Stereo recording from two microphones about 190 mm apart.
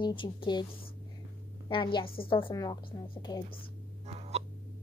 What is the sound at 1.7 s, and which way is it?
A woman's voice, 25° left (ahead or behind).